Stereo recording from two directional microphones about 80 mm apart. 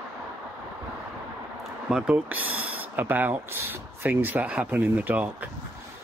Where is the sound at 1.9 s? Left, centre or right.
Centre.